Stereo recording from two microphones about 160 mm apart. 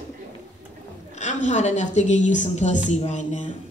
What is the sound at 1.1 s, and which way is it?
Speech, 45° left (ahead or behind).